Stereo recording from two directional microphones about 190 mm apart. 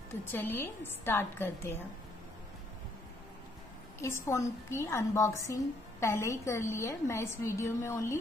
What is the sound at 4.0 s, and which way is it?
A woman's voice, 15° left (ahead or behind).